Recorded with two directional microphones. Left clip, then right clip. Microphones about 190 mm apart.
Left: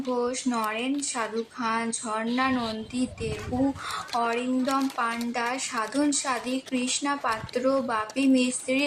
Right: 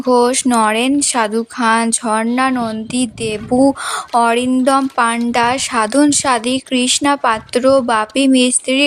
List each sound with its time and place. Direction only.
0.1 s speech: 55° right (ahead or behind)